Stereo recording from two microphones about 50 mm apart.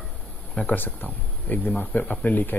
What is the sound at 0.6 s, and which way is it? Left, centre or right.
Speech, left.